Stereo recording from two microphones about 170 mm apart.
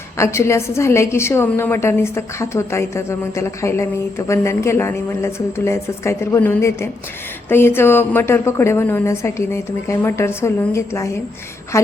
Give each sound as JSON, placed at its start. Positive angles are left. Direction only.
{"t": 0.2, "sound": "a woman's voice", "side_deg": 15}